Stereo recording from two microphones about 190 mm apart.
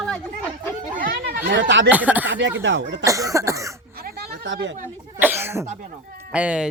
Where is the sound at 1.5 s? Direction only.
75° right (ahead or behind).